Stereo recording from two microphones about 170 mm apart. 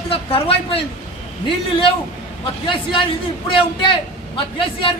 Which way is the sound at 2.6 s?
30° left (ahead or behind).